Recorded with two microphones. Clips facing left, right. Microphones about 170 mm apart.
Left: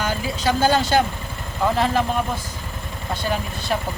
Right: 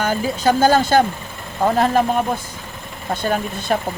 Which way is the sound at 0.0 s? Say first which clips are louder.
Right 5 dB; 45° right (ahead or behind).